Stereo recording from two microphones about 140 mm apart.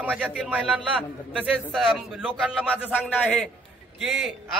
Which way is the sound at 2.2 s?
10° left (ahead or behind).